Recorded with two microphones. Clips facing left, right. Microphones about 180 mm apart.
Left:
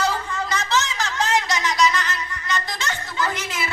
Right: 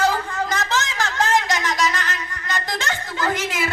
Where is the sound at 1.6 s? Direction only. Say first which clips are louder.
Left 2 dB; 50° right (ahead or behind).